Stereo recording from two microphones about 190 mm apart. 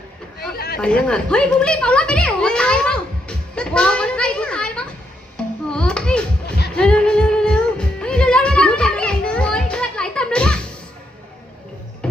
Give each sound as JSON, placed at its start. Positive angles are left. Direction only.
{"t": 0.5, "sound": "chatter", "side_deg": 55}
{"t": 0.8, "sound": "a sound", "side_deg": 5}
{"t": 5.7, "sound": "children playing", "side_deg": 5}
{"t": 6.7, "sound": "music", "side_deg": 5}